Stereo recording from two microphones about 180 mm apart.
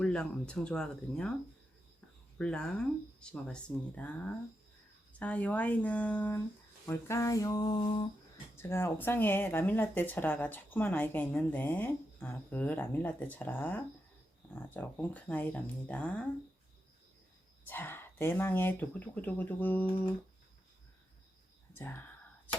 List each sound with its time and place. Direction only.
0.0 s speech: 5° left (ahead or behind)
2.4 s speech: 5° left (ahead or behind); by 8.1 s 25° left (ahead or behind)
8.5 s speech: 15° left (ahead or behind)
17.7 s speech: 10° left (ahead or behind)
21.8 s speech: 10° left (ahead or behind)